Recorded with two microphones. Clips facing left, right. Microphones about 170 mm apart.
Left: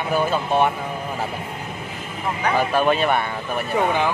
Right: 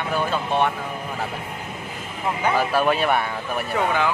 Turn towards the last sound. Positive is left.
turn(degrees=15)  # may be behind; listen again after turning